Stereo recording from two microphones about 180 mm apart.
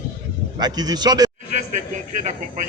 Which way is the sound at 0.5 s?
20° right (ahead or behind).